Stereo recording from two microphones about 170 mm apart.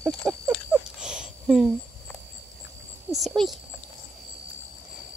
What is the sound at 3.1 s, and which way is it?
Speech, centre (ahead or behind).